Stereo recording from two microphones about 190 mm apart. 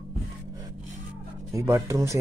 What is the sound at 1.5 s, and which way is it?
Speech, 15° right (ahead or behind).